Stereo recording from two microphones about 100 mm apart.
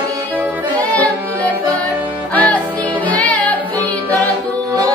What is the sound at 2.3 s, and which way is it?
Music, 15° left (ahead or behind).